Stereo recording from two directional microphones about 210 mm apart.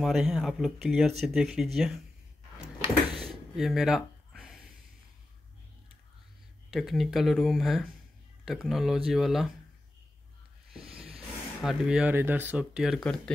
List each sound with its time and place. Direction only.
0.0 s speech: centre (ahead or behind)
3.2 s a sound: centre (ahead or behind)
6.7 s speech: centre (ahead or behind)
11.1 s speech: 5° right (ahead or behind)